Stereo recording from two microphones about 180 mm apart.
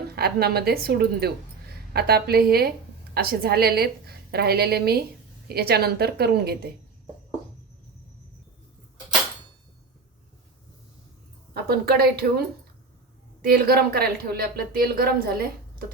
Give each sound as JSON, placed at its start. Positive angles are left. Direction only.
{"t": 0.2, "sound": "a woman's voice", "side_deg": -60}
{"t": 11.5, "sound": "a woman's voice", "side_deg": -60}